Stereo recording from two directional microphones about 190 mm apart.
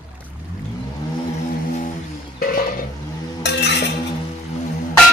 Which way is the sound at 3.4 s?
60° left (ahead or behind).